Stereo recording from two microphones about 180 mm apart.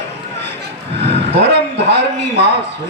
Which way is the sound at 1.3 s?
70° right (ahead or behind).